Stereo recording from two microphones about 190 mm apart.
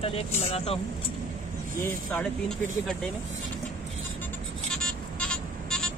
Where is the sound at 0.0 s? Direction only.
30° left (ahead or behind).